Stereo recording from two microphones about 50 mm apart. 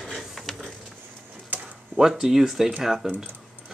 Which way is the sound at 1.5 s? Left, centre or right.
Right.